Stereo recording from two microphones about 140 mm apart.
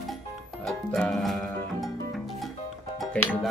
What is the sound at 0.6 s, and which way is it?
Music, 5° left (ahead or behind).